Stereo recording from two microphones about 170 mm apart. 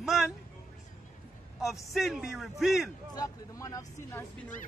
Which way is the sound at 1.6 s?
Centre (ahead or behind).